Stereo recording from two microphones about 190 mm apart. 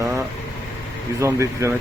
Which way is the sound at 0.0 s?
15° right (ahead or behind).